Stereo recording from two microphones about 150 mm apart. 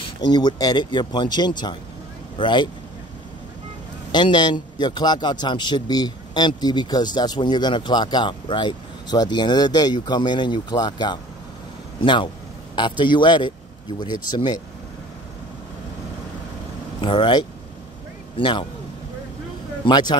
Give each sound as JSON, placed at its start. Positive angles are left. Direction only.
{"t": 0.2, "sound": "a man's voice", "side_deg": 30}
{"t": 4.1, "sound": "a man's voice", "side_deg": 30}
{"t": 17.0, "sound": "speech", "side_deg": 35}
{"t": 19.8, "sound": "a man's voice", "side_deg": 30}